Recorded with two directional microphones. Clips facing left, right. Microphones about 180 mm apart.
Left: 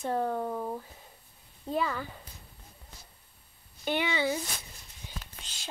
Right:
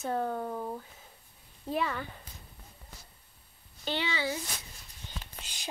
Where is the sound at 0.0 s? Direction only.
Centre (ahead or behind).